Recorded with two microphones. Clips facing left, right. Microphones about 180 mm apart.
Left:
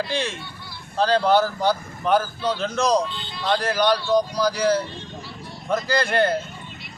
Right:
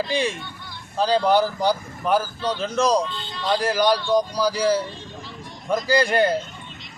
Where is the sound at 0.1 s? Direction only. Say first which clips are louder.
Right 3 dB; 10° right (ahead or behind).